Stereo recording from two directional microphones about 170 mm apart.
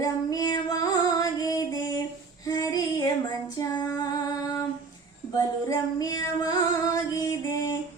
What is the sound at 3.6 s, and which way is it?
Female singing, 20° left (ahead or behind).